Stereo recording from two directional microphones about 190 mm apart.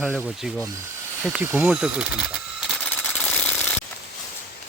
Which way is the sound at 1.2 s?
5° right (ahead or behind).